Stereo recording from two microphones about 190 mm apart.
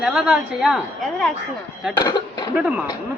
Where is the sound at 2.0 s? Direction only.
20° left (ahead or behind).